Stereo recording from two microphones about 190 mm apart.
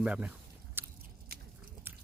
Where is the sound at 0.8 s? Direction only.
10° right (ahead or behind).